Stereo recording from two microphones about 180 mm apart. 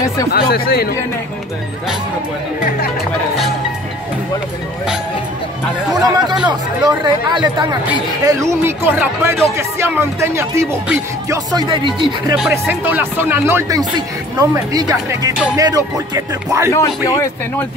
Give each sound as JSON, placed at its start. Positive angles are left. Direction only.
{"t": 0.3, "sound": "speech", "side_deg": 60}
{"t": 5.9, "sound": "speech", "side_deg": -20}
{"t": 12.4, "sound": "speech", "side_deg": -10}
{"t": 16.7, "sound": "speech", "side_deg": 20}